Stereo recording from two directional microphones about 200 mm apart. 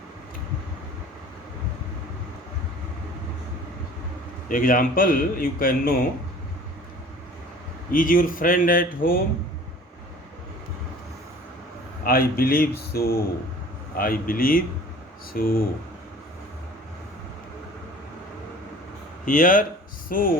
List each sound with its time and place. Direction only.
4.4 s a man's voice: 45° left (ahead or behind)
7.9 s a man's voice: 45° left (ahead or behind)
12.0 s a man's voice: 45° left (ahead or behind)
19.2 s speech: 40° left (ahead or behind)